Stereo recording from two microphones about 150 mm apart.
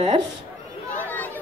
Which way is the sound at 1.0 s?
10° left (ahead or behind).